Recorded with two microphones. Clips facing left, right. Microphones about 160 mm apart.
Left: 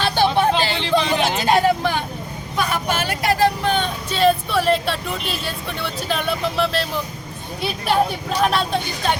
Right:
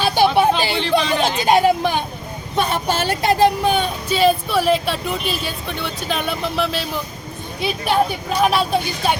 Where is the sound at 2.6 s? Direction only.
30° right (ahead or behind); by 7.0 s centre (ahead or behind).